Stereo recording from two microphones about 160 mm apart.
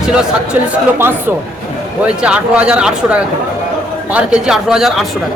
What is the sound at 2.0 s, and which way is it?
A man's voice, 5° right (ahead or behind).